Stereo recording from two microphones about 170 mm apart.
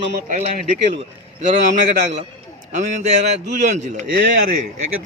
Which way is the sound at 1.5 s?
45° right (ahead or behind).